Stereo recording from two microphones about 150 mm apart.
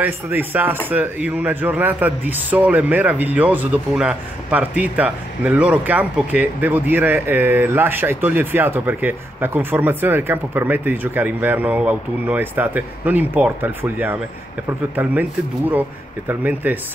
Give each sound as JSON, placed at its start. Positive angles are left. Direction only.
{"t": 0.0, "sound": "speech", "side_deg": -15}
{"t": 16.3, "sound": "speech", "side_deg": -10}